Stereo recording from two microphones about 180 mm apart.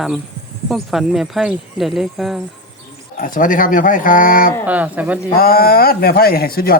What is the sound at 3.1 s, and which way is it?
Speech, 50° left (ahead or behind).